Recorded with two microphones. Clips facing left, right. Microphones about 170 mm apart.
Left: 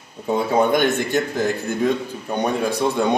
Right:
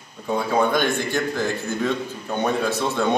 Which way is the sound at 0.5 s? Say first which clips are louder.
Left 3 dB; 20° left (ahead or behind).